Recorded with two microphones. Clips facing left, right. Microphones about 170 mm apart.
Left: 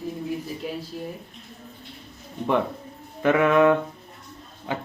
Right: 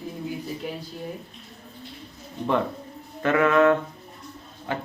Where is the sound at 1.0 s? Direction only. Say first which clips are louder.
Left 1 dB; centre (ahead or behind).